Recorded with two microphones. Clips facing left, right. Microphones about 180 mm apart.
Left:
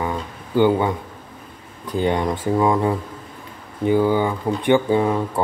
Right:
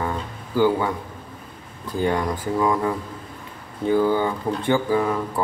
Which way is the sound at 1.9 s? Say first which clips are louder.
Left 2 dB; 20° left (ahead or behind).